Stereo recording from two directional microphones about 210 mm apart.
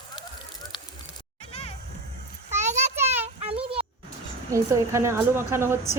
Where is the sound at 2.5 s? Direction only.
35° right (ahead or behind).